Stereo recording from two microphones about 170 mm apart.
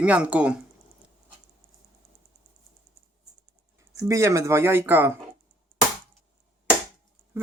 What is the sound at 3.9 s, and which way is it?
Speech, 15° right (ahead or behind).